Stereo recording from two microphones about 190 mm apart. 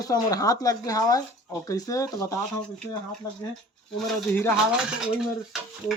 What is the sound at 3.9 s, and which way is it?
Speech, 5° left (ahead or behind).